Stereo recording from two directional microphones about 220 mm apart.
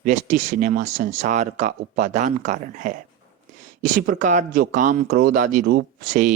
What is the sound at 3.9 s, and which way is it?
Speech, 35° right (ahead or behind).